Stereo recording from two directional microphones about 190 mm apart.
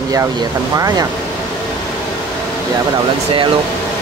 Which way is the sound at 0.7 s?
20° right (ahead or behind).